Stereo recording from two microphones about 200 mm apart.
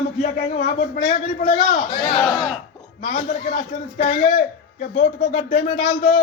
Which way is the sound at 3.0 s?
45° left (ahead or behind).